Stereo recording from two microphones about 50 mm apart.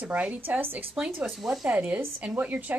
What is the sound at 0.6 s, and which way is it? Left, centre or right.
Speech, right.